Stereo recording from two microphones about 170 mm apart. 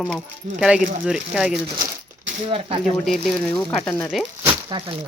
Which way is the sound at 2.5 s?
30° right (ahead or behind).